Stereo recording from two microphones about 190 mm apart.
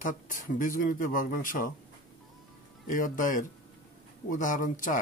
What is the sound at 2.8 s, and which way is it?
Speech, 45° left (ahead or behind).